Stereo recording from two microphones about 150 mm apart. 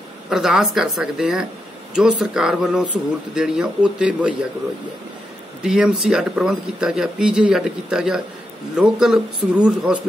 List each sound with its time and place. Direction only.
0.3 s speech: 5° right (ahead or behind)
5.6 s speech: 5° right (ahead or behind)